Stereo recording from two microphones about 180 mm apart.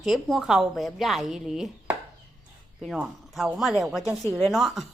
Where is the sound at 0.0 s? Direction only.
Centre (ahead or behind).